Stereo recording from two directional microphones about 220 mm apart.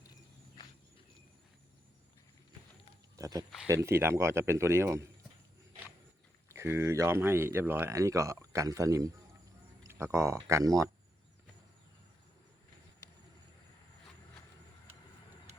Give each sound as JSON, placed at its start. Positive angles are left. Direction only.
{"t": 0.1, "sound": "walk", "side_deg": 20}
{"t": 3.2, "sound": "speech", "side_deg": -15}
{"t": 6.5, "sound": "speech", "side_deg": -10}